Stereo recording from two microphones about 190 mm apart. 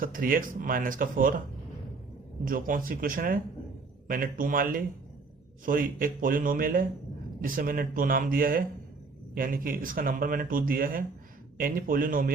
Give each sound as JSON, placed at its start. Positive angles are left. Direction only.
{"t": 0.0, "sound": "speech", "side_deg": -45}
{"t": 2.4, "sound": "speech", "side_deg": -45}